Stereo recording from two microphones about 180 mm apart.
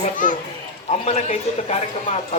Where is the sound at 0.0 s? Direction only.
45° left (ahead or behind).